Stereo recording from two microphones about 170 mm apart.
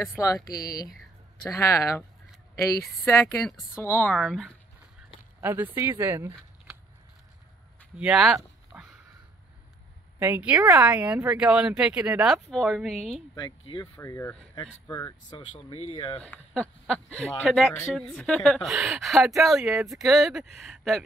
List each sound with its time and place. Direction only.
0.5 s speech: 65° left (ahead or behind)
1.5 s speech: 20° left (ahead or behind)
3.1 s speech: 15° left (ahead or behind)
3.4 s a woman's voice: centre (ahead or behind)
3.8 s speech: 10° left (ahead or behind)
5.4 s speech: 10° right (ahead or behind)
8.0 s a woman's voice: 5° right (ahead or behind)
8.7 s a sound: 10° right (ahead or behind)
10.1 s a woman's voice: 10° right (ahead or behind)
13.3 s speech: 25° left (ahead or behind)
13.9 s speech: 15° left (ahead or behind)
14.5 s speech: 25° left (ahead or behind)
15.5 s speech: 40° left (ahead or behind)
16.2 s a woman's voice: 5° left (ahead or behind)